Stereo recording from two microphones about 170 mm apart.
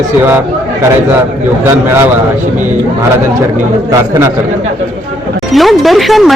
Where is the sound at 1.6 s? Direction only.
15° right (ahead or behind).